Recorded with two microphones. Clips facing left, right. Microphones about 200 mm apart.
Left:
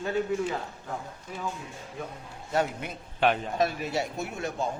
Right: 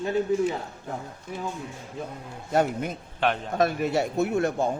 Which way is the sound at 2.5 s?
50° right (ahead or behind).